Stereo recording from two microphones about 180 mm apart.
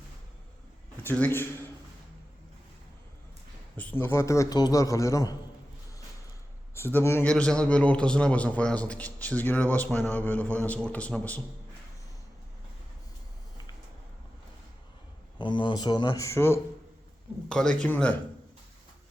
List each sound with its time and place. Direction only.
1.0 s a man's voice: 10° left (ahead or behind)
3.8 s a man's voice: 10° left (ahead or behind)
6.7 s a man's voice: 15° left (ahead or behind)
15.4 s a man's voice: 25° left (ahead or behind); by 18.2 s 10° left (ahead or behind)